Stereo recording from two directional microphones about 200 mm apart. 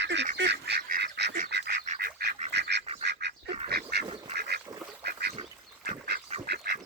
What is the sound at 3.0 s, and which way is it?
Duck, 55° right (ahead or behind).